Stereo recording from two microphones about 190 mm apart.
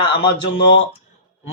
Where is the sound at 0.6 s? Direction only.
65° left (ahead or behind).